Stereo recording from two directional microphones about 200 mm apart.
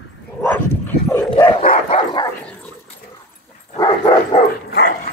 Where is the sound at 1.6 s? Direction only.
45° left (ahead or behind).